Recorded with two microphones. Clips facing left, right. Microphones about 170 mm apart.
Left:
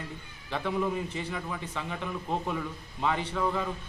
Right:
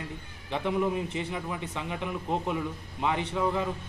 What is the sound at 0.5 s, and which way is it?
A man's voice, 15° right (ahead or behind).